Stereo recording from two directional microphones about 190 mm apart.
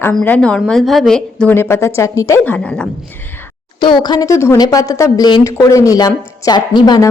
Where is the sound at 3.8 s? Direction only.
25° left (ahead or behind).